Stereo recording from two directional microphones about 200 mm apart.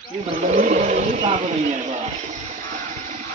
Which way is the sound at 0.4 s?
35° right (ahead or behind).